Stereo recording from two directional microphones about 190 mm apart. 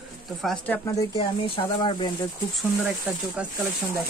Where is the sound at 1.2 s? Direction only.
30° left (ahead or behind).